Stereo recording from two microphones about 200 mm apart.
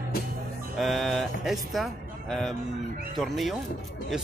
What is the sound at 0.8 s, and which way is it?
Music, centre (ahead or behind).